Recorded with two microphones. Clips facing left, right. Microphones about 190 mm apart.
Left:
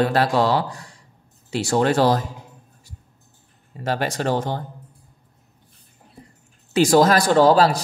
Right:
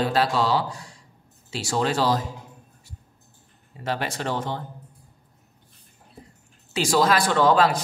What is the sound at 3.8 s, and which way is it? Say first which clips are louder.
Speech: left 5 dB; 45° left (ahead or behind).